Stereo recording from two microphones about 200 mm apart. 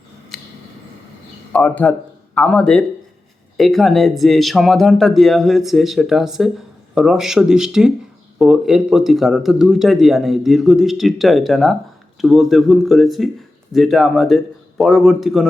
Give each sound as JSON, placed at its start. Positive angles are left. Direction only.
{"t": 1.5, "sound": "a man's voice", "side_deg": 5}